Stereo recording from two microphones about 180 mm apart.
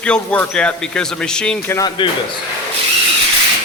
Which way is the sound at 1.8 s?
25° left (ahead or behind).